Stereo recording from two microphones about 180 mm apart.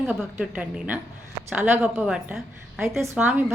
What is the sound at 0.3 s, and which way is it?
A woman's voice, 10° right (ahead or behind).